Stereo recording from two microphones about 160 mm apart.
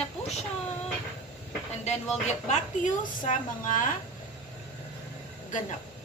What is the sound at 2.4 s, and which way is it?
Speech, 50° left (ahead or behind).